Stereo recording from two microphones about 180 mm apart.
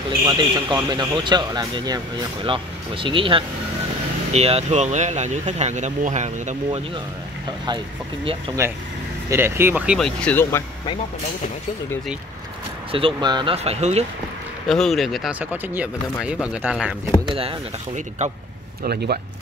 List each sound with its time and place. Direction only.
0.3 s speech: 20° right (ahead or behind); by 6.8 s 40° right (ahead or behind)
8.5 s speech: 25° right (ahead or behind)
9.3 s speech: 15° right (ahead or behind); by 10.6 s 10° left (ahead or behind)
12.9 s speech: 25° right (ahead or behind)
14.7 s speech: centre (ahead or behind)
15.5 s speech: 10° right (ahead or behind)
17.3 s speech: 30° right (ahead or behind)
18.9 s speech: 60° right (ahead or behind)